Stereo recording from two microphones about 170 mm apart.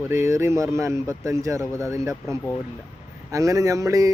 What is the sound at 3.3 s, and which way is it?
Speech, 20° right (ahead or behind).